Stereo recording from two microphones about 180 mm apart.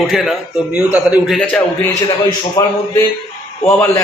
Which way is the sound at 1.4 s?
5° left (ahead or behind).